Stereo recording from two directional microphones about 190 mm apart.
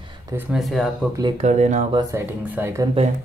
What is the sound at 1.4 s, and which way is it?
Speech, 40° right (ahead or behind).